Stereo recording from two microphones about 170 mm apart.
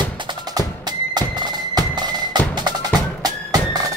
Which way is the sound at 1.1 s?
25° right (ahead or behind).